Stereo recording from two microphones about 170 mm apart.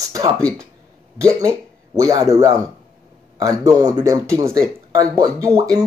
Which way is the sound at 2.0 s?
20° right (ahead or behind).